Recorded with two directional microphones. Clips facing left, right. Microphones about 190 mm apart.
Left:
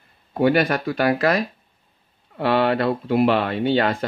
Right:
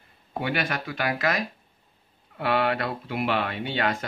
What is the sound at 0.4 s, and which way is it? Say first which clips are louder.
Speech: left 10 dB; 40° left (ahead or behind).